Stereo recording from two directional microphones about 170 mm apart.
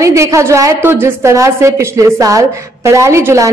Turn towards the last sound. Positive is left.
turn(degrees=-15)  # may be behind; listen again after turning